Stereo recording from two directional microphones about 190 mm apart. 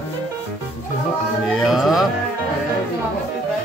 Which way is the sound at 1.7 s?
Centre (ahead or behind).